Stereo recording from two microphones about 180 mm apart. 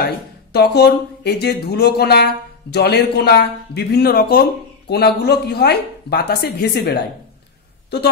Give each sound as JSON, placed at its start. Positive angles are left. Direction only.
{"t": 0.0, "sound": "speech", "side_deg": 60}